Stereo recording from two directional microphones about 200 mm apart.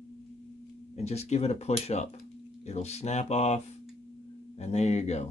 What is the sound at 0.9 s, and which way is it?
Speech, 30° left (ahead or behind).